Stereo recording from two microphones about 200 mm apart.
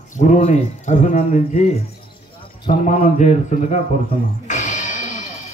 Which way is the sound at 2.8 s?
35° left (ahead or behind).